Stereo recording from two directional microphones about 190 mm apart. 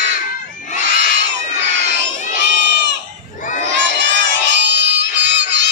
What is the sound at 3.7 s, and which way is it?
Crowd, 70° right (ahead or behind).